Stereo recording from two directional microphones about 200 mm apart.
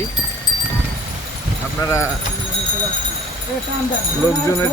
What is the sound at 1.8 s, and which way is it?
Speech, 15° left (ahead or behind).